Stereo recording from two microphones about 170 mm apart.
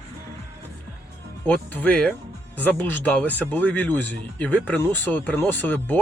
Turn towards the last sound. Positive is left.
turn(degrees=10)  # may be behind; listen again after turning